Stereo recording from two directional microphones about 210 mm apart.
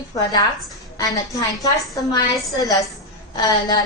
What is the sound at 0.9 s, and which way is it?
Speech, 15° left (ahead or behind).